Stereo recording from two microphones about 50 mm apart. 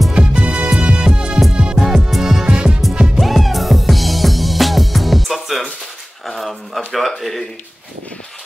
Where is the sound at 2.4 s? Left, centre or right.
Right.